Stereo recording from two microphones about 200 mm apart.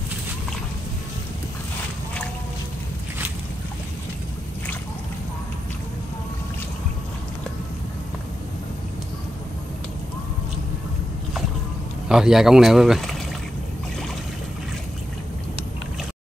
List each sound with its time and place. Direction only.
12.1 s speech: centre (ahead or behind)